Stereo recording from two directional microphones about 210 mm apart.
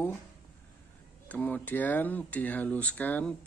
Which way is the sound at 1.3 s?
5° left (ahead or behind).